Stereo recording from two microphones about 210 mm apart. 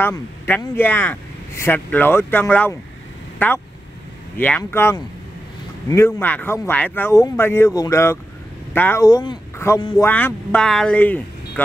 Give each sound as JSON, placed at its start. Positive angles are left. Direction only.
{"t": 0.0, "sound": "speech", "side_deg": 15}
{"t": 10.0, "sound": "speech", "side_deg": 10}